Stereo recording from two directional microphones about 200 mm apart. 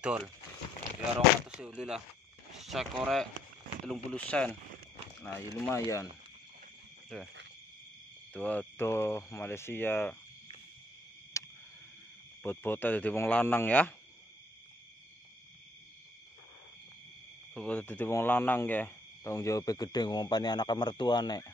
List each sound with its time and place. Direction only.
0.0 s speech: 5° right (ahead or behind)
1.5 s speech: 5° right (ahead or behind)
2.5 s a sound: centre (ahead or behind)
3.0 s speech: centre (ahead or behind)
7.1 s speech: centre (ahead or behind)
11.4 s a sound: 15° left (ahead or behind)
12.4 s speech: 10° left (ahead or behind)
17.6 s speech: 5° left (ahead or behind)